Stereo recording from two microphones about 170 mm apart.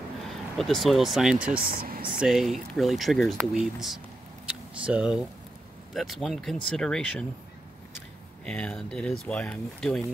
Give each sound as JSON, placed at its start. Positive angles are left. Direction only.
{"t": 0.6, "sound": "speech", "side_deg": 0}
{"t": 1.6, "sound": "speech", "side_deg": -60}
{"t": 2.1, "sound": "speech", "side_deg": 0}
{"t": 8.5, "sound": "speech", "side_deg": 5}